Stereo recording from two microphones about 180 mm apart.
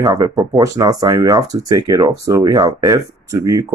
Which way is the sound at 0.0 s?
20° right (ahead or behind).